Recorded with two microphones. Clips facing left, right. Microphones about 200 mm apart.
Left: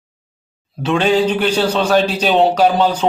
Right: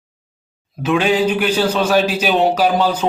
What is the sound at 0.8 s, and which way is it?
A man's voice, 10° right (ahead or behind).